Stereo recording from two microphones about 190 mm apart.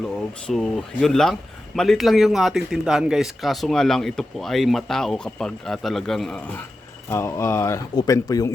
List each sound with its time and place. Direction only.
0.0 s speech: 5° left (ahead or behind)
7.1 s speech: 15° left (ahead or behind)